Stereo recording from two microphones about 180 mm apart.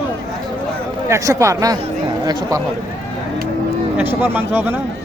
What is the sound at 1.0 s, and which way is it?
Speech, 15° right (ahead or behind).